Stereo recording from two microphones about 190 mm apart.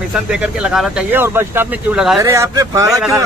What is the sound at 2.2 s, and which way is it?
Speech, 15° right (ahead or behind).